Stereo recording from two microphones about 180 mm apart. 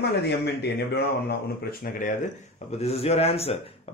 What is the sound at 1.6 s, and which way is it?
Speech, 50° left (ahead or behind).